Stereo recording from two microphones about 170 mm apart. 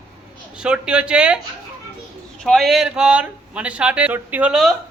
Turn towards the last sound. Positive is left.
turn(degrees=-5)  # may be behind; listen again after turning